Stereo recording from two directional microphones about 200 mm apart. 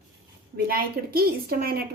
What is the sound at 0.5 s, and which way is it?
A woman's voice, 50° right (ahead or behind).